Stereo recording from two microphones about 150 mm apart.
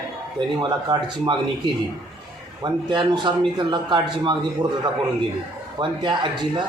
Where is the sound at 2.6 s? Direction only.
30° right (ahead or behind).